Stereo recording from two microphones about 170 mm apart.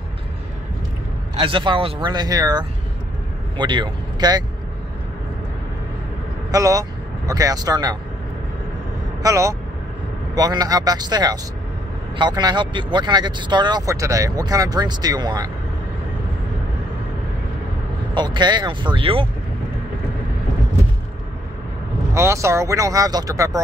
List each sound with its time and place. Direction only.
1.3 s speech: 30° right (ahead or behind)
6.5 s speech: 20° right (ahead or behind)
9.2 s speech: 20° right (ahead or behind)
18.1 s speech: 25° right (ahead or behind)
22.1 s speech: 15° right (ahead or behind)